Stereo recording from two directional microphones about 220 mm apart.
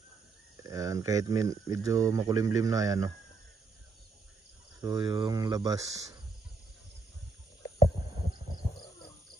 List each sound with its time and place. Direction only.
0.7 s speech: 15° right (ahead or behind)
4.8 s speech: 20° right (ahead or behind)
8.5 s a sound: 20° left (ahead or behind)